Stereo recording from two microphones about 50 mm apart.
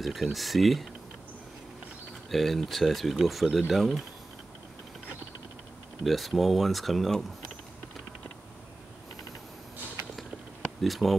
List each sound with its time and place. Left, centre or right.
0.0 s speech: centre
2.3 s speech: centre
6.0 s speech: centre
10.8 s speech: centre